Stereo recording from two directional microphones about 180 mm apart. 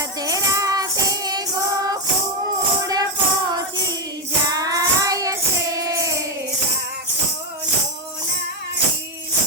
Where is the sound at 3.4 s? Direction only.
20° right (ahead or behind).